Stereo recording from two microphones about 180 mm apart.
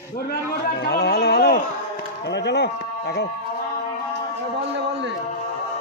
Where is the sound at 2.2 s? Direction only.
70° left (ahead or behind).